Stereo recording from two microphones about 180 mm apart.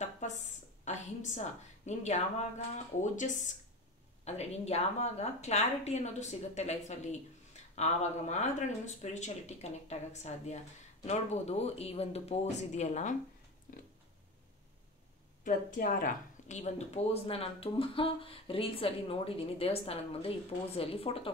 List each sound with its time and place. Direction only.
0.8 s speech: 40° left (ahead or behind)
13.7 s a sound: 50° left (ahead or behind)
15.4 s speech: 45° left (ahead or behind)